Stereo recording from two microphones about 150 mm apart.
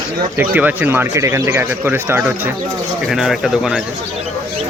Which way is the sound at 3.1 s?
5° right (ahead or behind).